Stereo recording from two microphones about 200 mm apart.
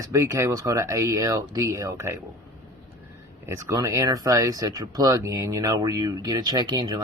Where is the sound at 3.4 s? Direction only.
15° right (ahead or behind).